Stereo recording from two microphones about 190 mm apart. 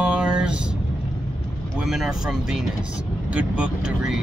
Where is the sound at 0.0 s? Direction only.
5° right (ahead or behind).